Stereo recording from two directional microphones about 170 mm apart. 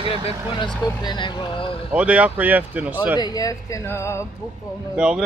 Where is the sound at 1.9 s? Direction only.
10° right (ahead or behind).